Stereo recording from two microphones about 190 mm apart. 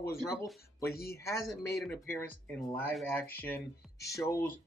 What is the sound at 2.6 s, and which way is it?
Speech, 5° left (ahead or behind).